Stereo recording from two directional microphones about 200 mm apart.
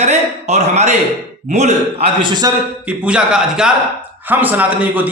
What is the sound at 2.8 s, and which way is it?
A man's voice, 5° right (ahead or behind).